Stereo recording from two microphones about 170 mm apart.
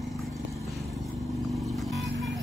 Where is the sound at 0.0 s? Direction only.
Centre (ahead or behind).